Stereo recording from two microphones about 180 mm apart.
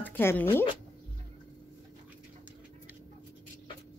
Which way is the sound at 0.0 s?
10° left (ahead or behind).